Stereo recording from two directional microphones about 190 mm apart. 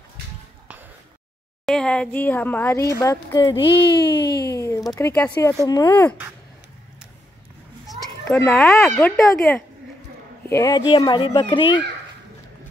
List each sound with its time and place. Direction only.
1.7 s speech: 5° left (ahead or behind); by 3.7 s 25° left (ahead or behind)
4.2 s speech: 60° left (ahead or behind)
4.5 s speech: 15° left (ahead or behind)
8.3 s speech: 10° left (ahead or behind)